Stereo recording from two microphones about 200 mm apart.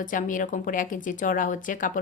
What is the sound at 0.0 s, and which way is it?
A woman's voice, 40° left (ahead or behind).